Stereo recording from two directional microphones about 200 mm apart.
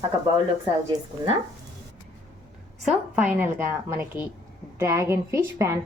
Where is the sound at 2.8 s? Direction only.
10° right (ahead or behind).